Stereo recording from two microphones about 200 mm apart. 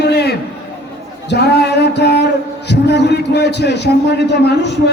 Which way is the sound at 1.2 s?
55° left (ahead or behind).